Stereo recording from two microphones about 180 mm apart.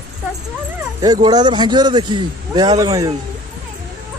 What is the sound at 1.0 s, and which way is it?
A man's voice, 20° right (ahead or behind).